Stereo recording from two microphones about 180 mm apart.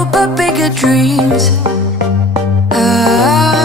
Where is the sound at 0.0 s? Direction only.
Centre (ahead or behind).